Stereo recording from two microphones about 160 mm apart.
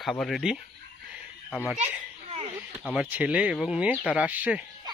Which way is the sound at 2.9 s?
10° right (ahead or behind).